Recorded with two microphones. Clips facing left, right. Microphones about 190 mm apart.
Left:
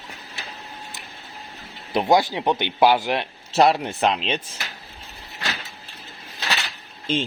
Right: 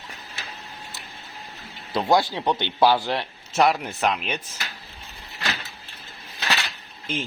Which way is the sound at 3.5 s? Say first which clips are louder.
Left 3 dB; 30° left (ahead or behind).